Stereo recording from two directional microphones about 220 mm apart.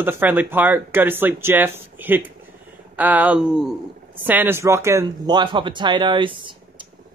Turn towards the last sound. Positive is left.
turn(degrees=-20)  # may be behind; listen again after turning